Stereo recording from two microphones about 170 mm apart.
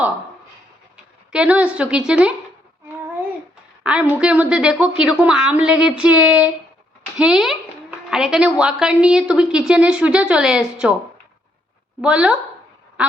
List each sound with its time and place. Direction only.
1.3 s a woman's voice: 5° right (ahead or behind)
3.8 s a woman's voice: 5° right (ahead or behind)
12.0 s a woman's voice: 5° right (ahead or behind)
13.0 s quack: 5° right (ahead or behind)